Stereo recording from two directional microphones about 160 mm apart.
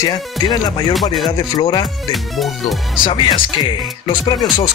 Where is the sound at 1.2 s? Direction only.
25° left (ahead or behind).